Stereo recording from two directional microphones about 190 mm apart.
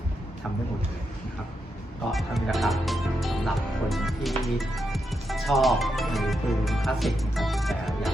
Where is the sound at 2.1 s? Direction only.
Centre (ahead or behind).